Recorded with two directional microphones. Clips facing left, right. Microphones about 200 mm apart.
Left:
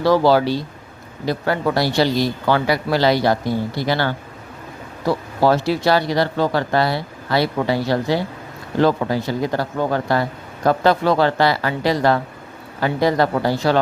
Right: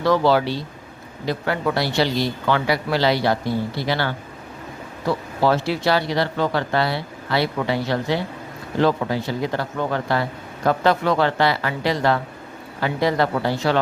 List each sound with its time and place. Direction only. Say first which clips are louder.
0.0 s speech: left 3 dB; 35° left (ahead or behind)